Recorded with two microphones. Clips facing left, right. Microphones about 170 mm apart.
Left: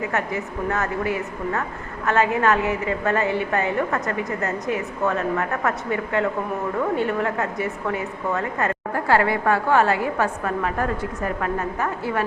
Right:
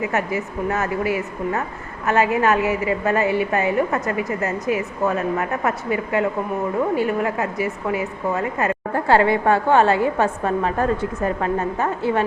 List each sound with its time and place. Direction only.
0.0 s a woman's voice: 15° right (ahead or behind)